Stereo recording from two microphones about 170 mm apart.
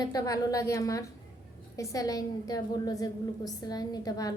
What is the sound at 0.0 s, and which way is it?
A woman's voice, 20° left (ahead or behind).